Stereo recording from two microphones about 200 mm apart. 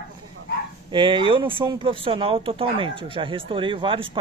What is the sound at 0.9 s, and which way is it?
Speech, 25° right (ahead or behind).